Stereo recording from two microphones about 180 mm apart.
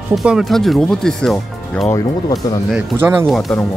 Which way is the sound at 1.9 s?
20° left (ahead or behind).